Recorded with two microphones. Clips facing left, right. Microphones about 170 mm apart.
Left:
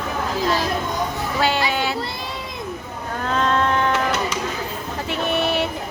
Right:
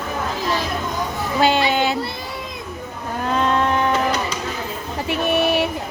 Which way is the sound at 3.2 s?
15° right (ahead or behind).